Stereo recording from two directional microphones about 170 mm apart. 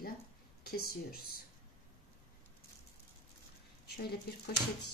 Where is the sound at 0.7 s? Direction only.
60° left (ahead or behind).